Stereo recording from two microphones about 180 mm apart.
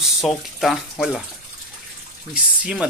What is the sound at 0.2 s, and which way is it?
Speech, centre (ahead or behind).